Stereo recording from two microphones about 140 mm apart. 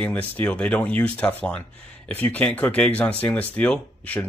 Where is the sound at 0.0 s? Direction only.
10° left (ahead or behind).